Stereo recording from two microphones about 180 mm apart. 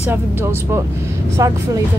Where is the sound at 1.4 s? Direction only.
20° right (ahead or behind).